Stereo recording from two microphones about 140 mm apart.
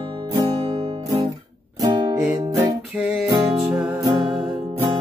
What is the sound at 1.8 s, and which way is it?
Music, 30° right (ahead or behind).